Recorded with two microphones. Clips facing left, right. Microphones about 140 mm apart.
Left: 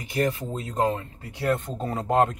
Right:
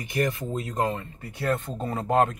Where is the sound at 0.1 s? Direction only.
30° left (ahead or behind).